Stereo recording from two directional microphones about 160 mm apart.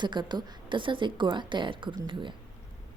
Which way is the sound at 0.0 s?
30° right (ahead or behind).